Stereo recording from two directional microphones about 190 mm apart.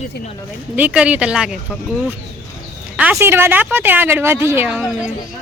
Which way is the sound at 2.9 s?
5° right (ahead or behind).